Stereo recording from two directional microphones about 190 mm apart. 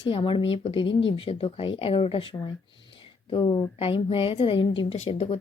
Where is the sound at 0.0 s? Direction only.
25° left (ahead or behind).